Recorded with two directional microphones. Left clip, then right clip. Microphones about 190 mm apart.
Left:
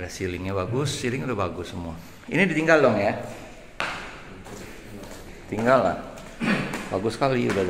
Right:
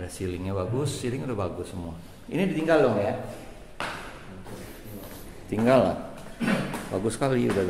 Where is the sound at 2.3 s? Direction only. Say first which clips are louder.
Left 4 dB; 15° left (ahead or behind).